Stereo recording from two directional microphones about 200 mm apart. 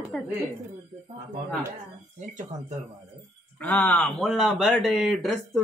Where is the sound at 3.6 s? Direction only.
10° left (ahead or behind).